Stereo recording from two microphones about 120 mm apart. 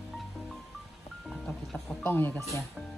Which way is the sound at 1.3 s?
Centre (ahead or behind).